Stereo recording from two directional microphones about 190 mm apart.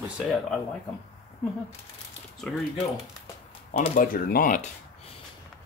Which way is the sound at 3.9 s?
45° left (ahead or behind).